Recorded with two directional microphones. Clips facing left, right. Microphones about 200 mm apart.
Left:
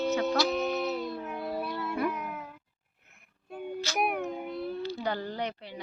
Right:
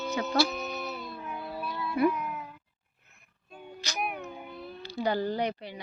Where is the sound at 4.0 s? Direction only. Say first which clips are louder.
Left 5 dB; 65° left (ahead or behind).